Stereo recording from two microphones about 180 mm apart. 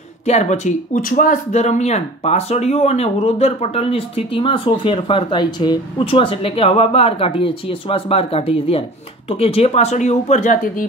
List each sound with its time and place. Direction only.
0.3 s speech: 40° left (ahead or behind)